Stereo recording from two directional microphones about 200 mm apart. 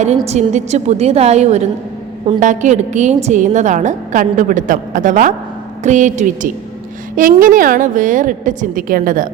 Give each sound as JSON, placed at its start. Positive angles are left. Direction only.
{"t": 0.3, "sound": "a woman's voice", "side_deg": -35}